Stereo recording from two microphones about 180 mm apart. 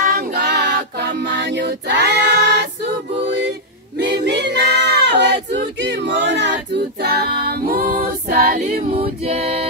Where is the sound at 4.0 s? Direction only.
70° right (ahead or behind); by 8.6 s 55° right (ahead or behind).